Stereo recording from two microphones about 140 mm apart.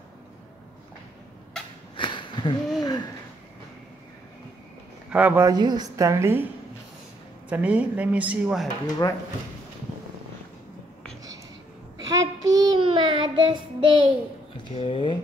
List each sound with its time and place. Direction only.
2.0 s a sound: 35° left (ahead or behind)
5.1 s a woman's voice: 15° right (ahead or behind)
5.5 s a woman's voice: 30° right (ahead or behind)
7.4 s a woman's voice: 10° right (ahead or behind)
8.8 s speech: 25° left (ahead or behind)
12.0 s child singing: 25° right (ahead or behind)
14.7 s speech: 40° left (ahead or behind)